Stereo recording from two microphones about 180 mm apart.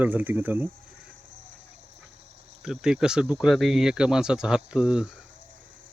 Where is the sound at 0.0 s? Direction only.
10° right (ahead or behind).